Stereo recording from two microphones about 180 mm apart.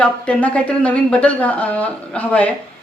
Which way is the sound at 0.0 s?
10° left (ahead or behind).